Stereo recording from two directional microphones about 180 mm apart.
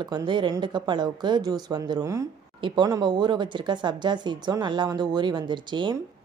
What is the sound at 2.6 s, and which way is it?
Speech, 25° right (ahead or behind).